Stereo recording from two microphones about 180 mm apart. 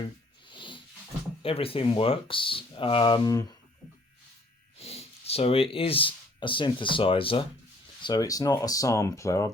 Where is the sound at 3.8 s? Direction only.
Centre (ahead or behind).